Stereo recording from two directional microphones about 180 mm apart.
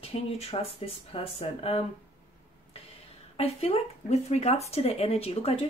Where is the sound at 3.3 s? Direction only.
35° left (ahead or behind).